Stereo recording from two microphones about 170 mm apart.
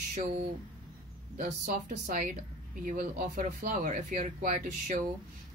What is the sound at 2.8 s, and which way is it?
Speech, 55° right (ahead or behind).